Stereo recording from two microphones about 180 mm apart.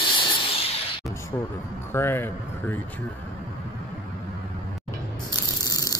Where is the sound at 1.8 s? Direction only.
15° left (ahead or behind).